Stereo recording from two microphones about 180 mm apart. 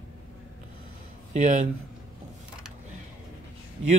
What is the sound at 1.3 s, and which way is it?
Speech, 40° right (ahead or behind).